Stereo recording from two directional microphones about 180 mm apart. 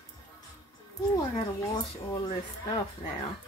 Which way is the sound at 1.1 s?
20° left (ahead or behind).